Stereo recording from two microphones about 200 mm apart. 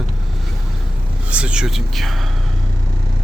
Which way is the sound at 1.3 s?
5° right (ahead or behind).